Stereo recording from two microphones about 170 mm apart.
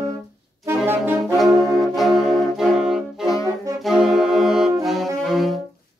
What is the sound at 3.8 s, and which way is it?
Brass instrument, centre (ahead or behind).